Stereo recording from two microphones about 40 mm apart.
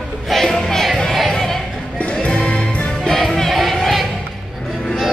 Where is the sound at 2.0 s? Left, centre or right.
Left.